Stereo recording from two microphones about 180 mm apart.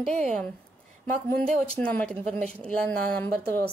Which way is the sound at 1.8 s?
5° left (ahead or behind).